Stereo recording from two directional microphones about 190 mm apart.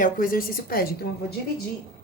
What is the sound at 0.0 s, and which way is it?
Speech, 50° left (ahead or behind).